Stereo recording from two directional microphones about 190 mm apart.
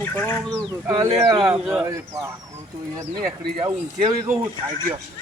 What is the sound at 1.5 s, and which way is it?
Speech, 5° right (ahead or behind).